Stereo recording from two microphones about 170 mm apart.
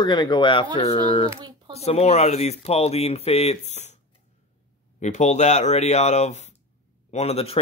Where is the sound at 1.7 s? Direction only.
35° left (ahead or behind).